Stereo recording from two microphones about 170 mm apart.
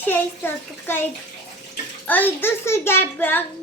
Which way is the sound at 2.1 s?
10° left (ahead or behind).